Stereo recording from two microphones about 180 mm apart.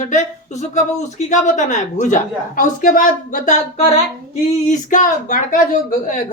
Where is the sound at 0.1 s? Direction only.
40° left (ahead or behind).